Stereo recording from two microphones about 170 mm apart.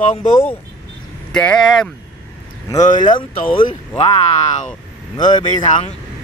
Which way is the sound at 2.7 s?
25° left (ahead or behind).